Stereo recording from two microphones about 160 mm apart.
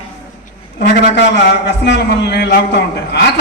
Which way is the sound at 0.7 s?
90° left.